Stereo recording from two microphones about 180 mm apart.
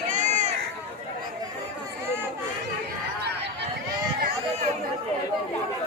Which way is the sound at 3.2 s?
70° right (ahead or behind).